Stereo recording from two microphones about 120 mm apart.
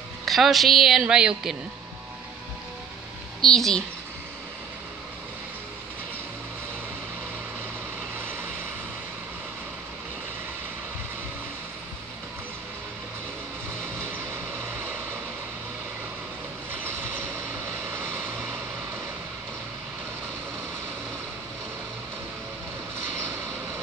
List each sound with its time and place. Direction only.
0.2 s a woman's voice: centre (ahead or behind)
3.3 s a woman's voice: 5° left (ahead or behind)
17.9 s vehicle: 15° right (ahead or behind)